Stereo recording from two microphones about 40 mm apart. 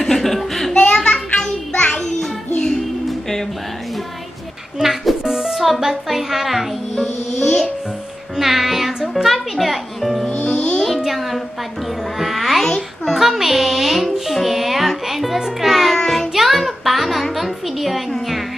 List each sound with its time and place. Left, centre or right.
0.0 s a sound: centre
0.9 s music: centre
4.7 s music: centre
8.4 s music: centre
10.4 s music: left
11.1 s a sound: centre
12.2 s music: centre
12.6 s babbling: centre
13.1 s music: centre
15.6 s music: centre
16.3 s a sound: centre
17.4 s music: centre